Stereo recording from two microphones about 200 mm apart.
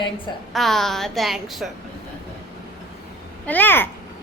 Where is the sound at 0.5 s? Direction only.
Centre (ahead or behind).